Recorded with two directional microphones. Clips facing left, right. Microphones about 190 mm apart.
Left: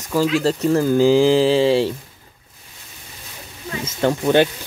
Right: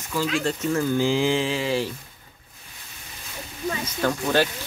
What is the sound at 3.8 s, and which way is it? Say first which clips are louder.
Speech: left 8 dB; 20° left (ahead or behind).